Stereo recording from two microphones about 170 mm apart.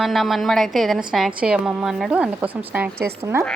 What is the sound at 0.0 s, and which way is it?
A woman's voice, centre (ahead or behind).